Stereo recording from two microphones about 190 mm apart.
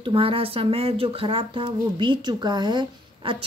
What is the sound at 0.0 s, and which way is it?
Speech, 30° right (ahead or behind).